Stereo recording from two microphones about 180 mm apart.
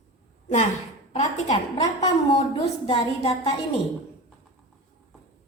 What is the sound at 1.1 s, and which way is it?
Speech, 40° left (ahead or behind).